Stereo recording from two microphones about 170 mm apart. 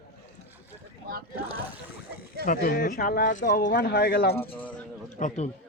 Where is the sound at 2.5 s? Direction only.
55° left (ahead or behind).